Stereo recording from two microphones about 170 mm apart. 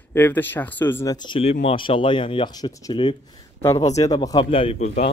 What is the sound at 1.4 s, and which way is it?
Speech, 40° left (ahead or behind).